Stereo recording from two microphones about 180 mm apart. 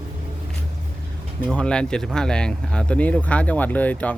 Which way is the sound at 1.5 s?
5° left (ahead or behind).